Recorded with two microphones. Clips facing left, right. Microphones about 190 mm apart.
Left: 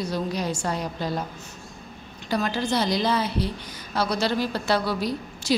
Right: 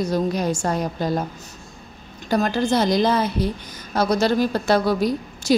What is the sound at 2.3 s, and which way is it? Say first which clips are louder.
A woman's voice: right 5 dB; 45° right (ahead or behind).